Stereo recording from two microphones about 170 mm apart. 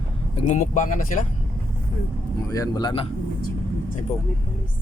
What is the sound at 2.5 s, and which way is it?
Speech, 20° left (ahead or behind).